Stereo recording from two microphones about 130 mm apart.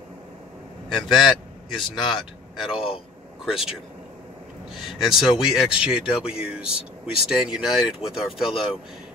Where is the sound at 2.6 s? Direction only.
45° left (ahead or behind).